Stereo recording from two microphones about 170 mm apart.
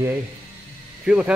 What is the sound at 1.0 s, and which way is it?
Speech, 5° right (ahead or behind).